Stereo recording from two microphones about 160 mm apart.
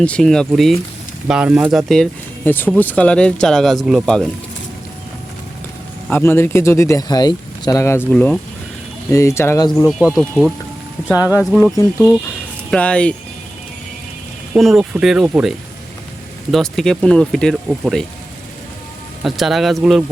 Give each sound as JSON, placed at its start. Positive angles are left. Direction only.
{"t": 0.0, "sound": "speech", "side_deg": 5}
{"t": 6.1, "sound": "speech", "side_deg": 15}
{"t": 8.1, "sound": "speech", "side_deg": 5}
{"t": 9.0, "sound": "speech", "side_deg": 20}
{"t": 9.6, "sound": "speech", "side_deg": 0}
{"t": 11.1, "sound": "speech", "side_deg": -10}
{"t": 12.7, "sound": "speech", "side_deg": 5}
{"t": 14.5, "sound": "speech", "side_deg": 0}
{"t": 19.2, "sound": "speech", "side_deg": 0}